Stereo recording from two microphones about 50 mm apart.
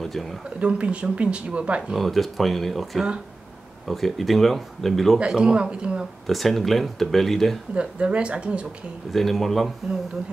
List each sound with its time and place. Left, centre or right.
0.6 s speech: right
2.0 s speech: centre
5.2 s speech: centre
6.2 s speech: centre
7.7 s speech: right
9.1 s speech: centre